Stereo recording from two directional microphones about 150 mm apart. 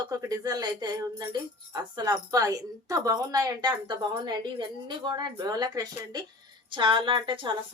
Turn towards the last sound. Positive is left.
turn(degrees=-35)  # may be behind; listen again after turning